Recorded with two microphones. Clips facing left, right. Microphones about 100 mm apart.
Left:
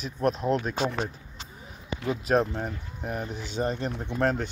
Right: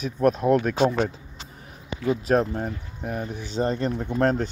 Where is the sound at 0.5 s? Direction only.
50° right (ahead or behind).